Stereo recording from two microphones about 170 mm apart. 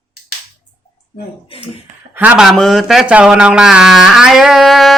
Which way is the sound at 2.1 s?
10° right (ahead or behind).